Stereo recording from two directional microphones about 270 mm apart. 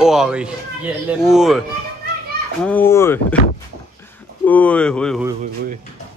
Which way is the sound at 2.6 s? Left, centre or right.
Centre.